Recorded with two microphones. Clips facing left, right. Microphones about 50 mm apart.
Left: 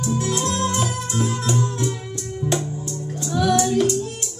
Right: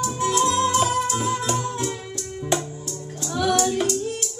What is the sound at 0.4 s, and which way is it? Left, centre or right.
Music, centre.